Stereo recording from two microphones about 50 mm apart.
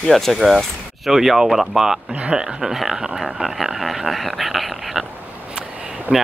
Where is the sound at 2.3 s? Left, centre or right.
Centre.